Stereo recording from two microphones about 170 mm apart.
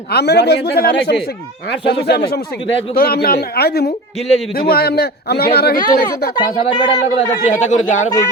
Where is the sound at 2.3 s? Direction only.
65° left (ahead or behind).